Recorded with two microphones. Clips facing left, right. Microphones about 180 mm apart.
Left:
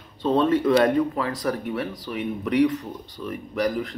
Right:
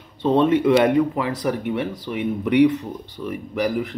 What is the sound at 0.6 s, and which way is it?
Speech, 10° right (ahead or behind).